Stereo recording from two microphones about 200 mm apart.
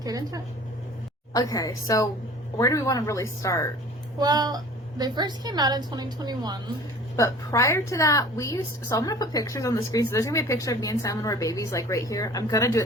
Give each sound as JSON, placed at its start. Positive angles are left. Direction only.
{"t": 0.0, "sound": "speech", "side_deg": -20}
{"t": 1.3, "sound": "a woman's voice", "side_deg": 20}
{"t": 4.2, "sound": "a woman's voice", "side_deg": -20}
{"t": 7.2, "sound": "a woman's voice", "side_deg": 15}